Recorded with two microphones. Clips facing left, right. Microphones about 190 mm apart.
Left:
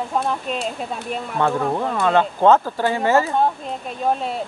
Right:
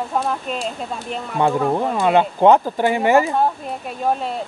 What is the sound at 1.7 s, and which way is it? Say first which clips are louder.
Speech: right 2 dB; 15° right (ahead or behind).